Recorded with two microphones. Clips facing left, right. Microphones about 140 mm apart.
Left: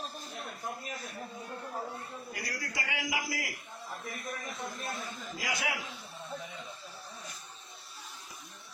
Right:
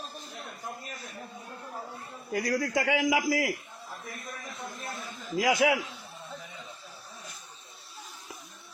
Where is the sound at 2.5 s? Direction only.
90° right.